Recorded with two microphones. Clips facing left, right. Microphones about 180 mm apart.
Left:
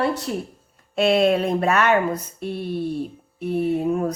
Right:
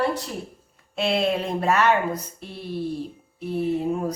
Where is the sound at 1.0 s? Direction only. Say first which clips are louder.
Left 5 dB; 55° left (ahead or behind).